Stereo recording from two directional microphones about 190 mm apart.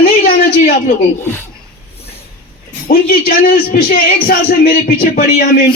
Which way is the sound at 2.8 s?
55° left (ahead or behind).